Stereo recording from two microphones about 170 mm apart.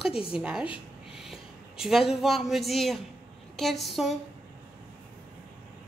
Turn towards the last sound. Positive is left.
turn(degrees=0)  # may be behind; listen again after turning